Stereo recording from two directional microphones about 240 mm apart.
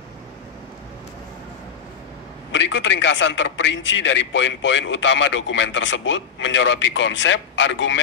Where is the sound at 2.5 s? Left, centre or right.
Left.